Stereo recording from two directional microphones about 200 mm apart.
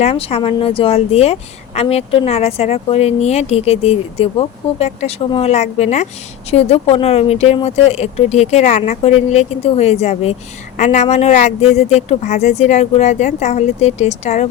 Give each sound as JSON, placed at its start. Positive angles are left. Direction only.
{"t": 0.0, "sound": "speech", "side_deg": 30}